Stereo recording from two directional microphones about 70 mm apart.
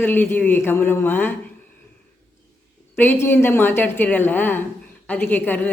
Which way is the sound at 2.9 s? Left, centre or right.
Left.